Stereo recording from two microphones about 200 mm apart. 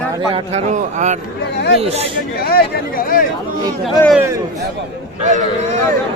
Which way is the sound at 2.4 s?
50° left (ahead or behind).